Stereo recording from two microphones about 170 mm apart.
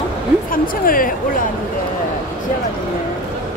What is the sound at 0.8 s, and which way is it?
Speech, 55° left (ahead or behind).